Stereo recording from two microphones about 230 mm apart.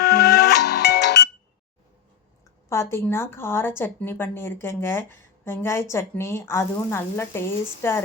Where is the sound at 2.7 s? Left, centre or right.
Centre.